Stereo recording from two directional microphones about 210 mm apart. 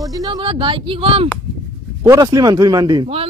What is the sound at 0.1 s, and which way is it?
A man's voice, 20° right (ahead or behind).